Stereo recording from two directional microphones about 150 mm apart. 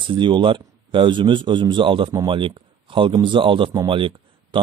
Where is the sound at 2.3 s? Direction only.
35° right (ahead or behind).